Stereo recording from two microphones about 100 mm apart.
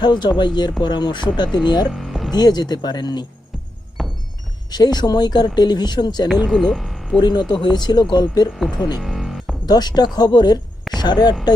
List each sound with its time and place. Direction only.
0.0 s speech: 50° left (ahead or behind)
1.9 s a sound: centre (ahead or behind)
2.3 s speech: 45° left (ahead or behind)
4.0 s music: centre (ahead or behind)
4.7 s speech: 45° left (ahead or behind)
6.4 s speech: 5° left (ahead or behind)
7.2 s speech: 45° left (ahead or behind)
8.5 s speech: centre (ahead or behind)
9.0 s music: centre (ahead or behind)
9.6 s speech: 45° left (ahead or behind)